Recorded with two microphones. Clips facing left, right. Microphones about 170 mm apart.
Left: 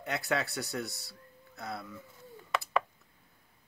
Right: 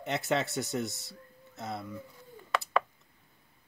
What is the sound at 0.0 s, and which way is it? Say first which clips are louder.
Speech: right 2 dB; 20° right (ahead or behind).